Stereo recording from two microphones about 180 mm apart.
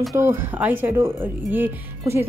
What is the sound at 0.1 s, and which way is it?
Speech, 15° right (ahead or behind).